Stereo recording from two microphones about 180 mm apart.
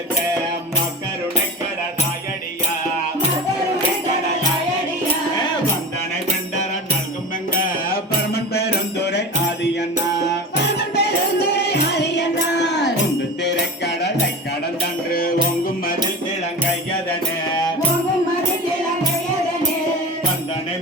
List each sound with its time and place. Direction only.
7.6 s music: 60° left (ahead or behind)
10.6 s music: 65° left (ahead or behind)
15.1 s music: 55° left (ahead or behind)